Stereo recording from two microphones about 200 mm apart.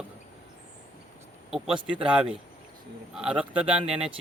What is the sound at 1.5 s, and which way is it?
A man's voice, centre (ahead or behind).